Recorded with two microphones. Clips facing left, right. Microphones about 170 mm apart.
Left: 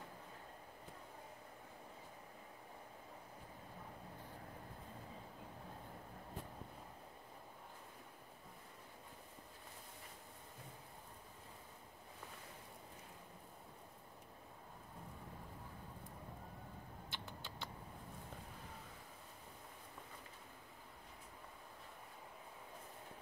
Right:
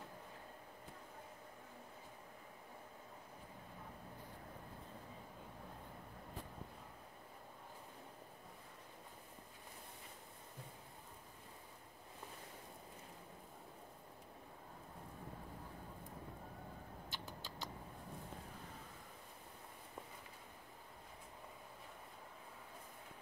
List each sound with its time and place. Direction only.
17.1 s rodents: 40° right (ahead or behind)